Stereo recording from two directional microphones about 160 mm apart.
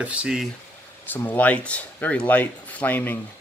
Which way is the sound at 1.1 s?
10° left (ahead or behind).